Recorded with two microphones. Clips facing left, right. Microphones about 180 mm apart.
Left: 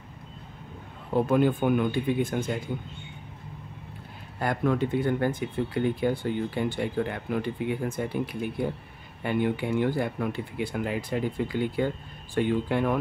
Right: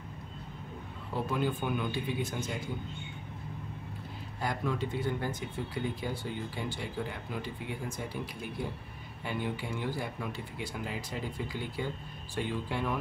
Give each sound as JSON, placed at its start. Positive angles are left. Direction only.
{"t": 1.1, "sound": "speech", "side_deg": 55}
{"t": 4.4, "sound": "speech", "side_deg": 55}